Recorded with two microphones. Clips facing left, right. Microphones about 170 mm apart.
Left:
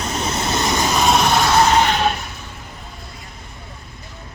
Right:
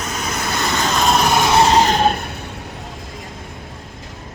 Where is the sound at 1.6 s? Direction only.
35° right (ahead or behind).